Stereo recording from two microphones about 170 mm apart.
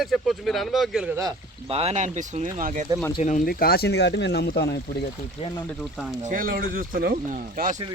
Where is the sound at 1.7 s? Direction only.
35° right (ahead or behind).